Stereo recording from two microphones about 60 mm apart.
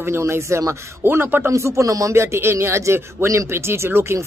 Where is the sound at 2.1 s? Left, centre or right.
Right.